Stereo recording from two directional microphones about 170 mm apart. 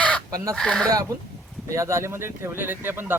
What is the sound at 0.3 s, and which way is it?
Speech, 20° right (ahead or behind).